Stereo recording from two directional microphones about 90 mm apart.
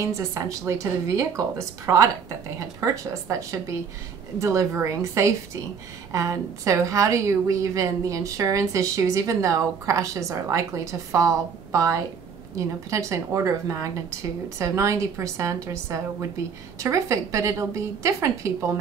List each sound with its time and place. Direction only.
0.0 s a woman's voice: 35° right (ahead or behind)